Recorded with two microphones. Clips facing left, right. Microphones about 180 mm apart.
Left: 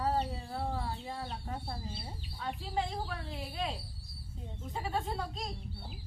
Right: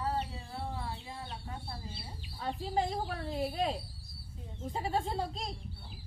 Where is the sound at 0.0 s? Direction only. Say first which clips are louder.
Left 3 dB; 35° left (ahead or behind).